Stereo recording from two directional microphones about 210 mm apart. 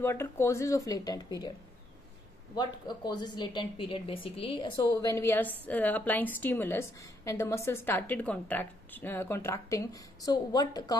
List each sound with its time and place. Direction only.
0.0 s a woman's voice: 10° left (ahead or behind)
2.5 s a woman's voice: 20° left (ahead or behind)